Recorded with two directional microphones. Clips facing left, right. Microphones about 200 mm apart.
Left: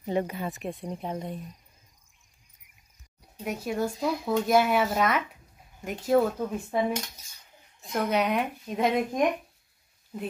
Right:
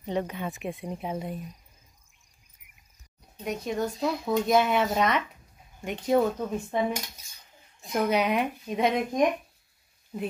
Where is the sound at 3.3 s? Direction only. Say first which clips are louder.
Even; 5° left (ahead or behind).